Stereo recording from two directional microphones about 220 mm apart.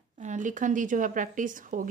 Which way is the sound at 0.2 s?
35° right (ahead or behind).